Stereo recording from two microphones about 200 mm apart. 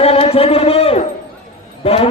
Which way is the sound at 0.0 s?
30° left (ahead or behind).